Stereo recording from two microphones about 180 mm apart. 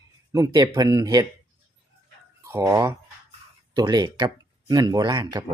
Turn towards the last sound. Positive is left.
turn(degrees=-25)  # may be behind; listen again after turning